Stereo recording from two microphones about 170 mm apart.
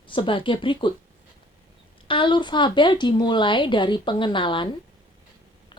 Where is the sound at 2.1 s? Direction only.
30° left (ahead or behind).